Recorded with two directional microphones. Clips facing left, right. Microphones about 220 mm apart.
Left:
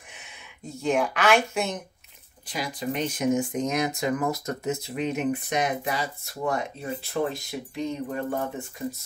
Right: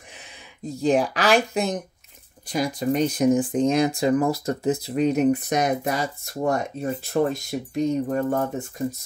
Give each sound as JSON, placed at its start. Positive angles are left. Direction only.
{"t": 0.7, "sound": "speech", "side_deg": -35}